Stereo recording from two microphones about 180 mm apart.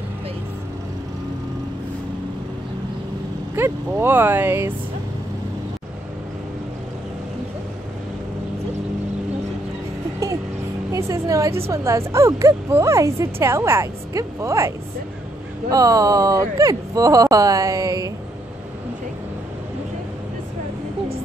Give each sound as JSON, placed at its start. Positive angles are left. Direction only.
{"t": 3.5, "sound": "speech", "side_deg": -15}
{"t": 10.9, "sound": "speech", "side_deg": -15}
{"t": 15.7, "sound": "speech", "side_deg": -20}